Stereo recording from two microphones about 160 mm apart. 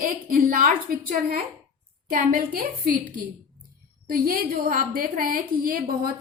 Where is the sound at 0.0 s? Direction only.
60° right (ahead or behind).